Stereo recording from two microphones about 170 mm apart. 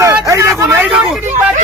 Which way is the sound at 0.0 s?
15° right (ahead or behind).